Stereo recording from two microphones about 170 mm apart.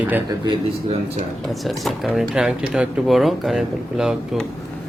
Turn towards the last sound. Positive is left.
turn(degrees=0)  # may be behind; listen again after turning